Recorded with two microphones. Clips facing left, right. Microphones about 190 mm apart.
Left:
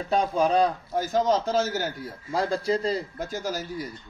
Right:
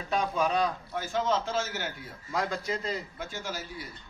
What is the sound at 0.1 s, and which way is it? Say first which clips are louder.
A man's voice: left 5 dB; 35° left (ahead or behind).